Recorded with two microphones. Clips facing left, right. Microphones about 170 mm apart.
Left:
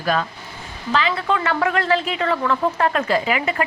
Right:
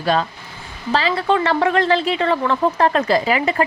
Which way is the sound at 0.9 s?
35° right (ahead or behind).